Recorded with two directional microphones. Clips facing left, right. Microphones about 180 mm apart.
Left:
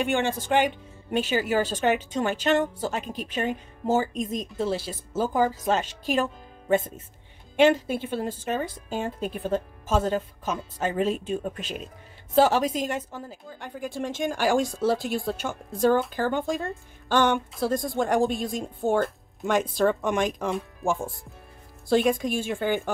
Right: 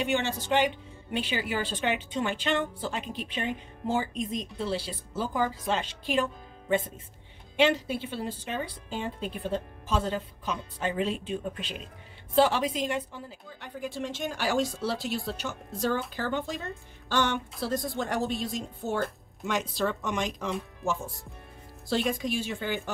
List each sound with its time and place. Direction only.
0.0 s a woman's voice: 50° left (ahead or behind)
7.5 s a woman's voice: 50° left (ahead or behind)
21.8 s a woman's voice: 50° left (ahead or behind)